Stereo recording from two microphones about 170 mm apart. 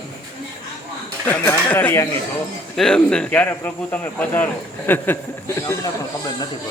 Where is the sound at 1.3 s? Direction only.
10° left (ahead or behind).